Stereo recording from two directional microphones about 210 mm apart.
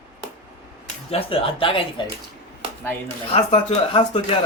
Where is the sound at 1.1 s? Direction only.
25° left (ahead or behind).